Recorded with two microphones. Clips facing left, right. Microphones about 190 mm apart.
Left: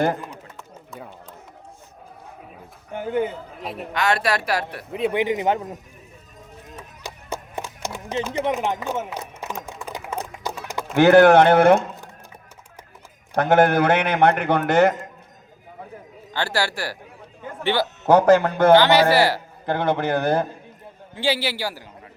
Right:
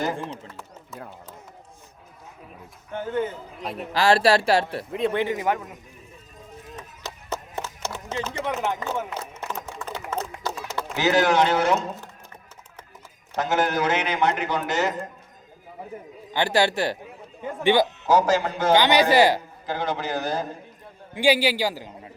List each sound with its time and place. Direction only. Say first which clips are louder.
2.9 s speech: left 3 dB; 15° left (ahead or behind)
3.6 s a man's voice: even; centre (ahead or behind)
3.9 s speech: right 4 dB; 30° right (ahead or behind)
4.9 s speech: left 5 dB; 5° left (ahead or behind); by 5.7 s 30° left (ahead or behind)
6.7 s music: left 2 dB; 10° left (ahead or behind)
9.0 s a sound: left 1 dB; 10° left (ahead or behind)
10.9 s a man's voice: left 9 dB; 55° left (ahead or behind)
13.3 s a man's voice: left 7 dB; 60° left (ahead or behind)
16.3 s speech: right 3 dB; 15° right (ahead or behind)
18.1 s a man's voice: left 7 dB; 60° left (ahead or behind)
18.7 s speech: left 3 dB; 15° right (ahead or behind)
19.6 s a man's voice: left 6 dB; 60° left (ahead or behind)
21.2 s a man's voice: right 4 dB; 15° right (ahead or behind)